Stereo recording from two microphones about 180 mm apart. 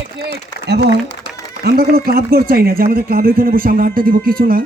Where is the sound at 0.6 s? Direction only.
65° right (ahead or behind).